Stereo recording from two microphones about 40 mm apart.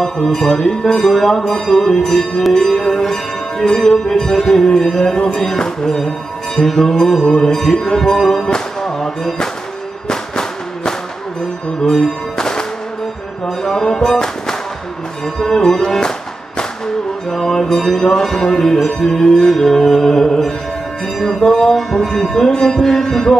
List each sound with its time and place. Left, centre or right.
0.0 s music: centre
11.8 s music: centre
15.5 s music: centre
17.3 s music: centre
21.5 s music: centre